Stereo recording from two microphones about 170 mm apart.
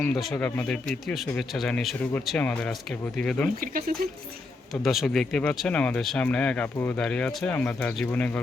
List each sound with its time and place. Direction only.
0.0 s speech: centre (ahead or behind)
3.6 s speech: 55° right (ahead or behind)
4.7 s speech: centre (ahead or behind)